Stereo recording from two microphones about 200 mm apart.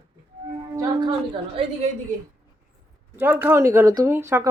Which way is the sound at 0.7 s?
20° right (ahead or behind).